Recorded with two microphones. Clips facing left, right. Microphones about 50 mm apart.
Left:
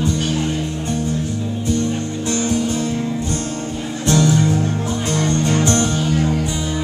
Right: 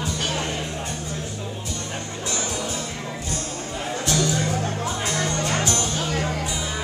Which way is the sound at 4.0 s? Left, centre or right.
Left.